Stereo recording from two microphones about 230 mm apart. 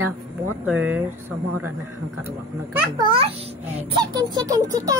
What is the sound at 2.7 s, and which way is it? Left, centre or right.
A child's voice, centre.